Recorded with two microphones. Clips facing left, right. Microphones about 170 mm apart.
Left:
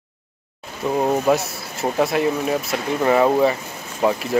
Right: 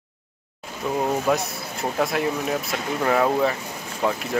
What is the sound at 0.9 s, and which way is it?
Speech, 20° left (ahead or behind).